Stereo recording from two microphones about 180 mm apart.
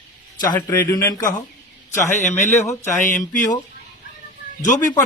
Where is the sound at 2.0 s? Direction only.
40° left (ahead or behind).